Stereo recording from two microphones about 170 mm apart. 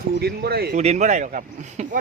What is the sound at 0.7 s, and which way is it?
Speech, 40° right (ahead or behind).